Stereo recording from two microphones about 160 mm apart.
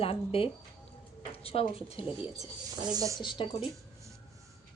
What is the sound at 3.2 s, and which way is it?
Speech, 30° left (ahead or behind).